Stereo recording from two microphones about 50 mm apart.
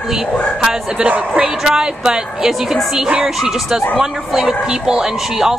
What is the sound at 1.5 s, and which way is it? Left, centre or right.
Speech, centre.